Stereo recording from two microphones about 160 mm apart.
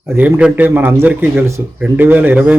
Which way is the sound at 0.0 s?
10° right (ahead or behind).